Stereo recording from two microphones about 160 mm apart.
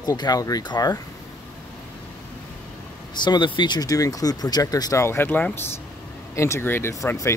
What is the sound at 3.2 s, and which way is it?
Speech, 30° left (ahead or behind).